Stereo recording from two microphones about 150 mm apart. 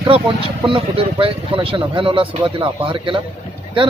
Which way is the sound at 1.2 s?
35° right (ahead or behind).